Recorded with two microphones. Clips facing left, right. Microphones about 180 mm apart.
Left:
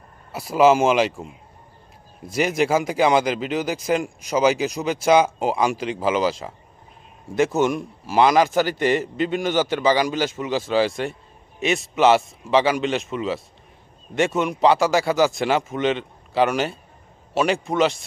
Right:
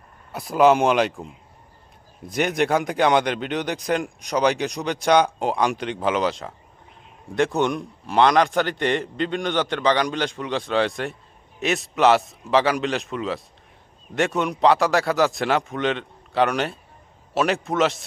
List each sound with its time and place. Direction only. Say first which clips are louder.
0.3 s a man's voice: left 1 dB; centre (ahead or behind)